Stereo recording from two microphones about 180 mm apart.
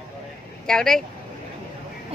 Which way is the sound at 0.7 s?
5° left (ahead or behind).